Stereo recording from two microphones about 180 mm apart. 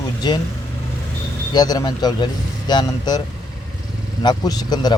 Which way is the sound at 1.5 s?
20° left (ahead or behind).